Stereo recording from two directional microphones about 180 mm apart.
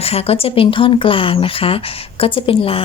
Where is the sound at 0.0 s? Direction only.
35° left (ahead or behind).